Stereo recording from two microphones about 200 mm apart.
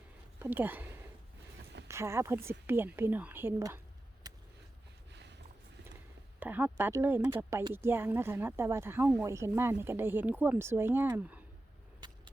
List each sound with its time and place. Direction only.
0.3 s speech: 10° right (ahead or behind)
4.2 s vehicle: 20° right (ahead or behind)
6.4 s speech: 10° right (ahead or behind)
11.9 s vehicle: 20° right (ahead or behind)